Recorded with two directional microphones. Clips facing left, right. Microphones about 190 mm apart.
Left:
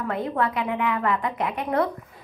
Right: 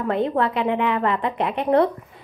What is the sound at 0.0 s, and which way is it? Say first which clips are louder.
A woman's voice: right 4 dB; 25° right (ahead or behind).